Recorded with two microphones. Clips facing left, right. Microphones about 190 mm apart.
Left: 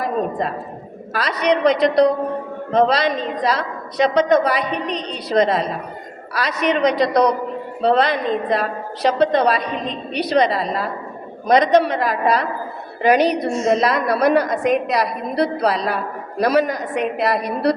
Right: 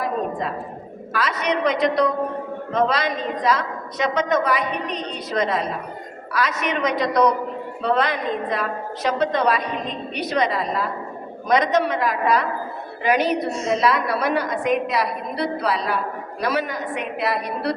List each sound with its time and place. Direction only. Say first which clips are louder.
0.0 s a woman's voice: left 3 dB; 40° left (ahead or behind)